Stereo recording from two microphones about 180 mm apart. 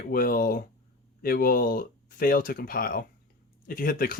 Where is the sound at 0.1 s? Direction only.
55° left (ahead or behind).